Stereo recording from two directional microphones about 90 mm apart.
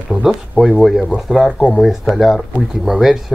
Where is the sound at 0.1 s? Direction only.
5° right (ahead or behind).